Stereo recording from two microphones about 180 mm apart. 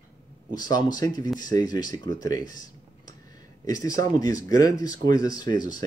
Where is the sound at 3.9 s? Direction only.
20° left (ahead or behind).